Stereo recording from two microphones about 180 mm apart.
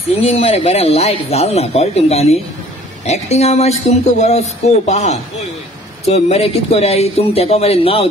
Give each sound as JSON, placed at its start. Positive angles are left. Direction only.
{"t": 0.1, "sound": "speech", "side_deg": 35}